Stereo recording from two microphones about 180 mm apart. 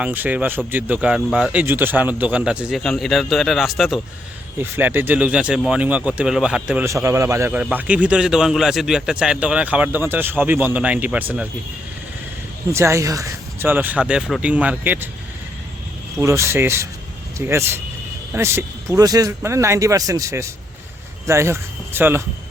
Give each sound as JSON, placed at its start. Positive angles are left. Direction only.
{"t": 0.0, "sound": "speech", "side_deg": -10}
{"t": 12.7, "sound": "speech", "side_deg": -15}
{"t": 16.1, "sound": "speech", "side_deg": -15}